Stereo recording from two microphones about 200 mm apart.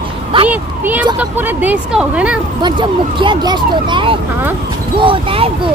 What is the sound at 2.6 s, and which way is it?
Speech, 25° right (ahead or behind).